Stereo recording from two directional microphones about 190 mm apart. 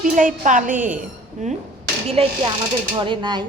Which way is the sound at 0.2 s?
45° right (ahead or behind).